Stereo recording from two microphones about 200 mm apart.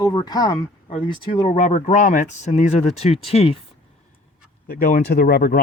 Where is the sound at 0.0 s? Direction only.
20° left (ahead or behind).